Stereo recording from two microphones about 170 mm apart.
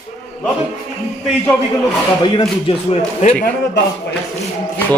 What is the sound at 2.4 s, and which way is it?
Speech, 30° left (ahead or behind).